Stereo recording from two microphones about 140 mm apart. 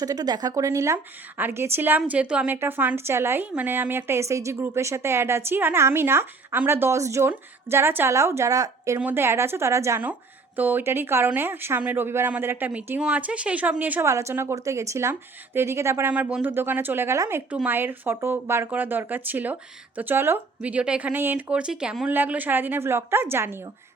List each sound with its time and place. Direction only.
0.0 s a woman's voice: 25° right (ahead or behind)